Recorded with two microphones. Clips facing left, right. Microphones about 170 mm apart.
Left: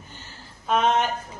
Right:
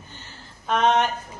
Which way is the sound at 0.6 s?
5° left (ahead or behind).